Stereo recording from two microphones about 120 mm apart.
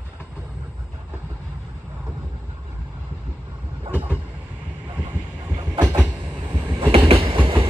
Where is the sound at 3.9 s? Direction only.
15° right (ahead or behind).